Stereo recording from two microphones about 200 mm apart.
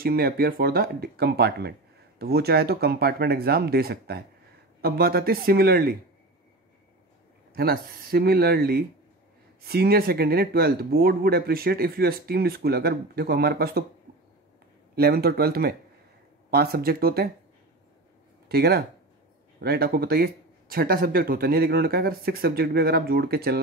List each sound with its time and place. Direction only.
0.0 s speech: 50° right (ahead or behind)
7.5 s speech: 50° right (ahead or behind)
15.0 s speech: 50° right (ahead or behind)
18.5 s speech: 50° right (ahead or behind)